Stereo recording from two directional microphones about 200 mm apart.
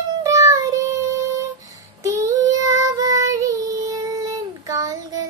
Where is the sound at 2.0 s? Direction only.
15° right (ahead or behind).